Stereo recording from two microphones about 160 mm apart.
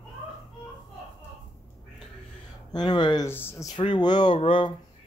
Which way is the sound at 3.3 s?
15° left (ahead or behind).